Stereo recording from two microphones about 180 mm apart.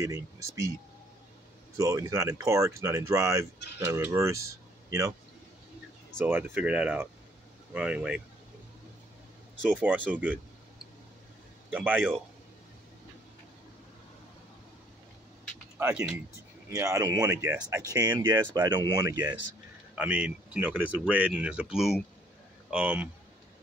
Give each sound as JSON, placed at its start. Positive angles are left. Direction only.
{"t": 0.0, "sound": "speech", "side_deg": -20}
{"t": 1.8, "sound": "speech", "side_deg": -20}
{"t": 6.2, "sound": "speech", "side_deg": -10}
{"t": 9.7, "sound": "speech", "side_deg": -10}
{"t": 11.7, "sound": "speech", "side_deg": -10}
{"t": 15.8, "sound": "speech", "side_deg": -10}
{"t": 20.0, "sound": "speech", "side_deg": -5}